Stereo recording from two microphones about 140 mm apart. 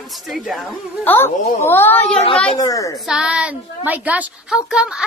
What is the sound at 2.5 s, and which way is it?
Speech, 25° left (ahead or behind).